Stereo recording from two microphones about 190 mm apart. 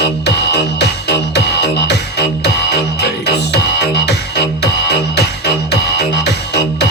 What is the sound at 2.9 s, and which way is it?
Music, 60° left (ahead or behind).